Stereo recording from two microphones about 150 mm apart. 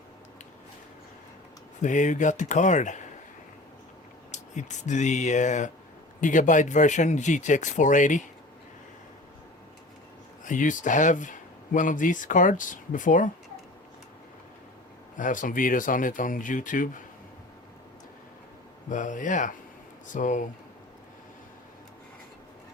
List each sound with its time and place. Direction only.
1.8 s speech: 55° left (ahead or behind)
4.3 s speech: 55° left (ahead or behind)
10.4 s speech: 60° left (ahead or behind)
15.2 s speech: 60° left (ahead or behind)
18.9 s speech: 60° left (ahead or behind)